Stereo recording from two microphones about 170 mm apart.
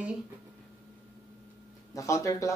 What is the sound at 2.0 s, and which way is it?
Speech, 20° left (ahead or behind).